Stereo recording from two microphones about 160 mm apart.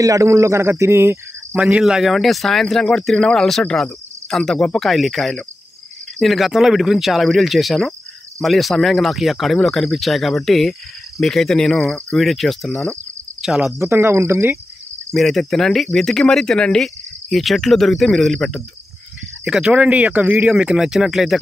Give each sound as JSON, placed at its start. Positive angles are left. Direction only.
{"t": 0.0, "sound": "cricket", "side_deg": -20}
{"t": 1.6, "sound": "speech", "side_deg": -5}
{"t": 13.7, "sound": "cricket", "side_deg": -15}
{"t": 15.1, "sound": "speech", "side_deg": 0}